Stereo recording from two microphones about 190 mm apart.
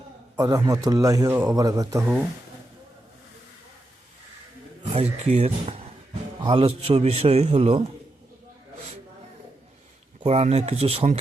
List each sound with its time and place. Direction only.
0.3 s speech: 20° right (ahead or behind)
4.9 s a man's voice: 35° right (ahead or behind)
10.2 s a man's voice: 35° right (ahead or behind)